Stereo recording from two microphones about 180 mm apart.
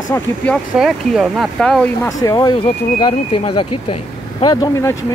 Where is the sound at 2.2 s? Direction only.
20° left (ahead or behind).